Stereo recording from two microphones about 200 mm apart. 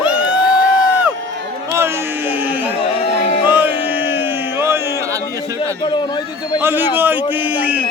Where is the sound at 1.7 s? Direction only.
10° right (ahead or behind).